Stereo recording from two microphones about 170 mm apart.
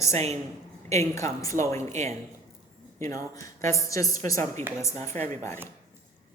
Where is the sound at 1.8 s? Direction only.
45° right (ahead or behind).